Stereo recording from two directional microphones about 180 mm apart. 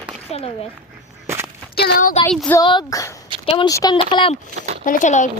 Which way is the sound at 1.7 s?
55° left (ahead or behind).